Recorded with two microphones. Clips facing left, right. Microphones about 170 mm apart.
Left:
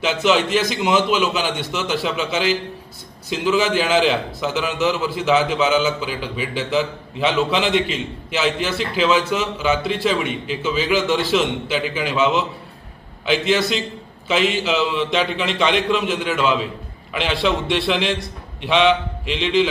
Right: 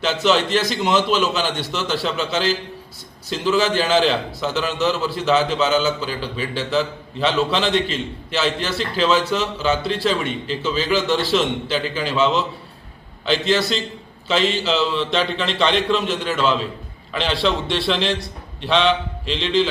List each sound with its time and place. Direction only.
0.0 s a man's voice: 15° left (ahead or behind)